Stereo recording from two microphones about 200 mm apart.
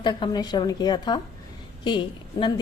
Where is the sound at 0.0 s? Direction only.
20° left (ahead or behind).